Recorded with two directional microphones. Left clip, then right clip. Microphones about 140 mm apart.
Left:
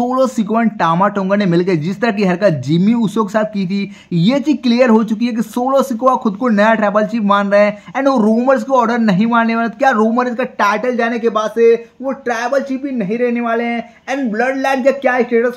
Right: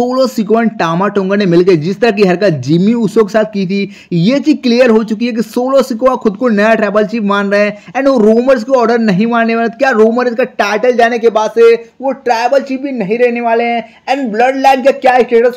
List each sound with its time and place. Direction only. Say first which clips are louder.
0.0 s a man's voice: right 3 dB; 15° right (ahead or behind); by 15.5 s 40° right (ahead or behind)